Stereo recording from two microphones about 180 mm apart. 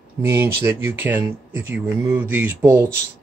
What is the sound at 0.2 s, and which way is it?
A man's voice, 15° right (ahead or behind).